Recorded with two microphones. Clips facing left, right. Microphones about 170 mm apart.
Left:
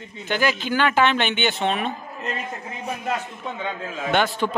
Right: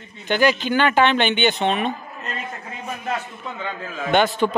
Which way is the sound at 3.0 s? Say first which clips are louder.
Right 1 dB; 15° left (ahead or behind).